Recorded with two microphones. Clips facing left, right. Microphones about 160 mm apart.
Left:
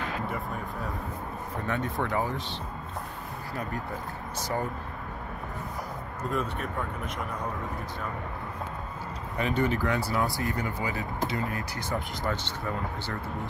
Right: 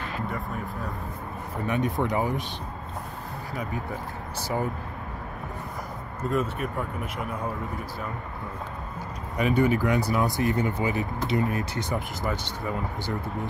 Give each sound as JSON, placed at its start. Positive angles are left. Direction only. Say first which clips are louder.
{"t": 1.7, "sound": "speech", "louder": "right 4 dB", "side_deg": -15}
{"t": 6.3, "sound": "speech", "louder": "right 4 dB", "side_deg": -5}
{"t": 9.4, "sound": "speech", "louder": "right 5 dB", "side_deg": -10}
{"t": 12.2, "sound": "speech", "louder": "right 1 dB", "side_deg": -10}